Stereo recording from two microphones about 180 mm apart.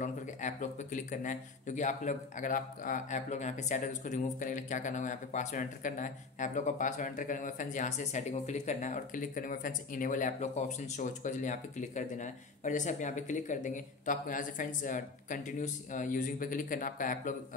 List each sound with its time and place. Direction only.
0.0 s speech: 45° left (ahead or behind)